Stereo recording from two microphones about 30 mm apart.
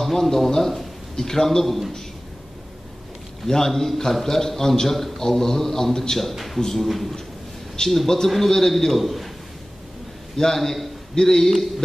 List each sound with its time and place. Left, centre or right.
0.0 s a man's voice: centre
3.4 s a man's voice: centre
6.3 s a man's voice: centre
6.6 s a man's voice: centre
7.8 s a man's voice: left
8.3 s a man's voice: centre
10.3 s a man's voice: centre